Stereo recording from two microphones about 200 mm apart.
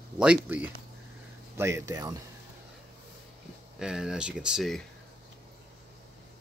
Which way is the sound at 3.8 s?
5° right (ahead or behind).